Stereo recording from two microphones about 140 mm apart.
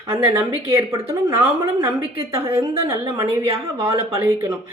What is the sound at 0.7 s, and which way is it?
A woman's voice, 20° right (ahead or behind).